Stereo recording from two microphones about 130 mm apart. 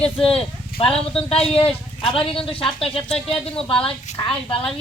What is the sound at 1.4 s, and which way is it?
A woman's voice, 45° left (ahead or behind).